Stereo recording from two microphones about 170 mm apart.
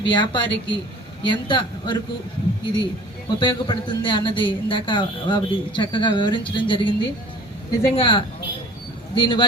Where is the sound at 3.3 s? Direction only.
30° left (ahead or behind).